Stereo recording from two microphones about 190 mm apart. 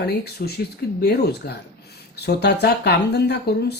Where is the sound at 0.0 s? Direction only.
55° left (ahead or behind).